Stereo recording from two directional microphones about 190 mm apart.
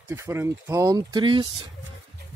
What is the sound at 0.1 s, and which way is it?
Speech, 15° right (ahead or behind).